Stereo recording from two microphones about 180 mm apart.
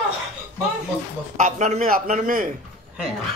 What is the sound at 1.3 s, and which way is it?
A man's voice, 40° right (ahead or behind).